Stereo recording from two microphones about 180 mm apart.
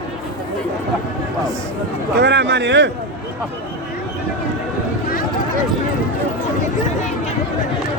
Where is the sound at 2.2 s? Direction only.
70° right (ahead or behind).